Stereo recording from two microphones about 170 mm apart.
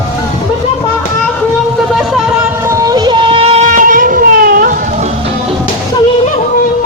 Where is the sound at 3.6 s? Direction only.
50° right (ahead or behind).